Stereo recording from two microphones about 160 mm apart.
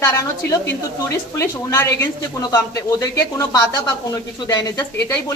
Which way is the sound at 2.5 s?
20° left (ahead or behind).